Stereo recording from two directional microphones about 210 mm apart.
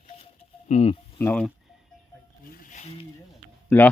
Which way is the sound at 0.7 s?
30° left (ahead or behind).